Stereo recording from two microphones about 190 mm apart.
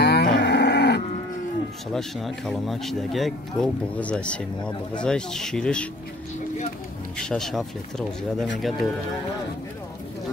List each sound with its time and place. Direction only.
0.0 s a sound: 60° left (ahead or behind)
2.0 s speech: centre (ahead or behind)
7.2 s speech: 5° left (ahead or behind)